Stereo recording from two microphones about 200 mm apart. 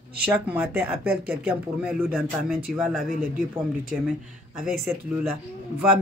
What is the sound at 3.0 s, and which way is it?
Speech, 40° right (ahead or behind).